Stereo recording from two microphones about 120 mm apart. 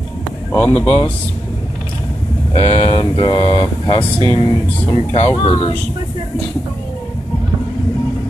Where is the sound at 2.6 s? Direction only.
50° left (ahead or behind).